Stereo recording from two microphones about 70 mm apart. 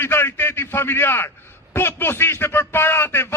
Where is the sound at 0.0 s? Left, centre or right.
Left.